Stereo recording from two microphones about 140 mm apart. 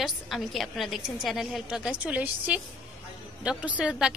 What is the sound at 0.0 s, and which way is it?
A woman's voice, centre (ahead or behind).